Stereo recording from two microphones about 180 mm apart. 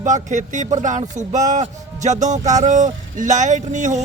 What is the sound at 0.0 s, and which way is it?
Speech, 45° right (ahead or behind).